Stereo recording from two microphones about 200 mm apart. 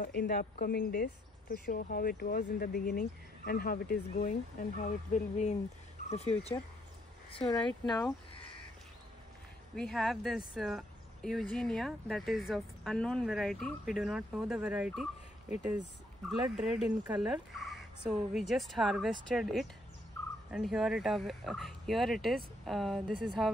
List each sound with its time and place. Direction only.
0.0 s speech: 55° left (ahead or behind); by 6.3 s 35° left (ahead or behind)
7.3 s speech: 20° left (ahead or behind)
9.8 s speech: centre (ahead or behind)